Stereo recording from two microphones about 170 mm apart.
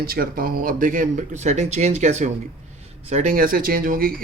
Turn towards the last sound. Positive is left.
turn(degrees=-55)  # may be behind; listen again after turning